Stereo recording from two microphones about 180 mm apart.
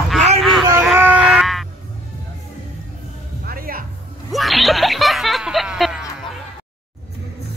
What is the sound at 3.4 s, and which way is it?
Music, 55° right (ahead or behind).